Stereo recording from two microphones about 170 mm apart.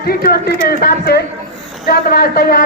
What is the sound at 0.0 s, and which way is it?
Speech, 60° left (ahead or behind).